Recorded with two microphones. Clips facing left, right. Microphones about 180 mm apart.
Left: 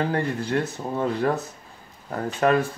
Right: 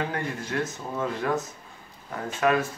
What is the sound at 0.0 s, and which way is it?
Speech, 35° left (ahead or behind).